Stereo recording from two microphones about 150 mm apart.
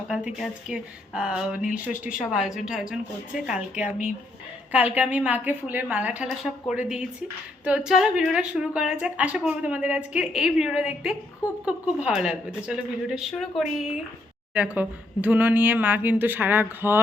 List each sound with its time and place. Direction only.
0.3 s speech: 5° right (ahead or behind)